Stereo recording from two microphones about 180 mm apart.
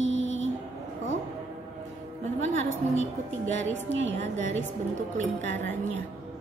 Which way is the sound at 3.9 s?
90° right.